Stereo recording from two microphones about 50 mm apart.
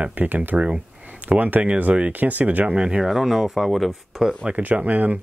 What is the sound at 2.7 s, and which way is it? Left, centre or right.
Speech, right.